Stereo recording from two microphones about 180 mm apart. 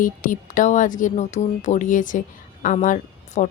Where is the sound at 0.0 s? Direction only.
50° left (ahead or behind).